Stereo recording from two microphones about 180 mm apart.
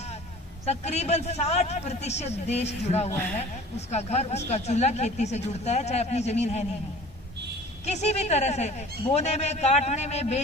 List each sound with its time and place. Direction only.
0.6 s speech: 35° left (ahead or behind)
7.9 s speech: 40° left (ahead or behind)